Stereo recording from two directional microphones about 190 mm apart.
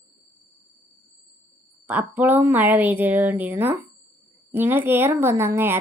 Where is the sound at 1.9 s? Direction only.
10° right (ahead or behind).